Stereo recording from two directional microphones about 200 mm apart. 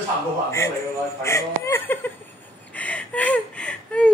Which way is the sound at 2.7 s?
5° left (ahead or behind).